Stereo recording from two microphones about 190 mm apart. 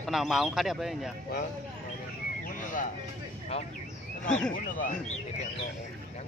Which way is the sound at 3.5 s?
35° left (ahead or behind).